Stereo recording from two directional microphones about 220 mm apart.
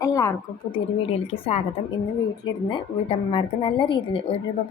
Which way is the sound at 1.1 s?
25° left (ahead or behind).